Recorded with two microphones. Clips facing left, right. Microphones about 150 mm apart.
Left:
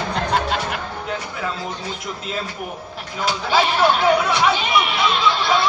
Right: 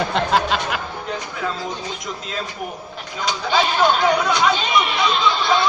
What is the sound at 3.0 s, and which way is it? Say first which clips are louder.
Speech: left 1 dB; 5° left (ahead or behind).